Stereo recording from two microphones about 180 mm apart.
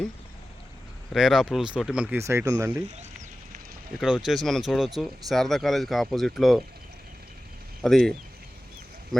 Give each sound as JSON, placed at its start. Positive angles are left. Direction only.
{"t": 1.1, "sound": "speech", "side_deg": 0}
{"t": 4.0, "sound": "speech", "side_deg": 0}
{"t": 7.8, "sound": "speech", "side_deg": 0}